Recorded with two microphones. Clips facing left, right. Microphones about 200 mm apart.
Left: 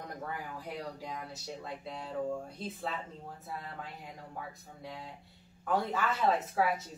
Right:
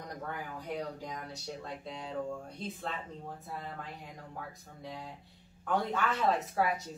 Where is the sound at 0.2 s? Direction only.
Centre (ahead or behind).